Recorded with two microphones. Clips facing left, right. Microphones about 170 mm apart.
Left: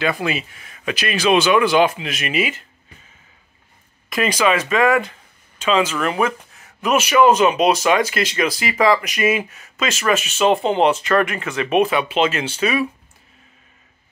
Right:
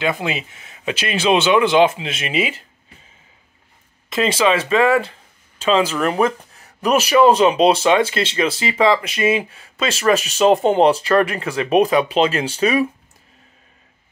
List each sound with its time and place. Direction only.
0.0 s speech: 20° right (ahead or behind)
4.1 s speech: 25° right (ahead or behind)